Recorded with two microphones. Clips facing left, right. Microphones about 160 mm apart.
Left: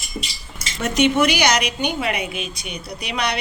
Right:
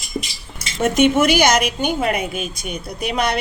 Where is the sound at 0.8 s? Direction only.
50° right (ahead or behind).